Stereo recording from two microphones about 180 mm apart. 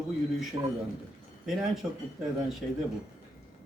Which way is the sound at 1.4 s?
Centre (ahead or behind).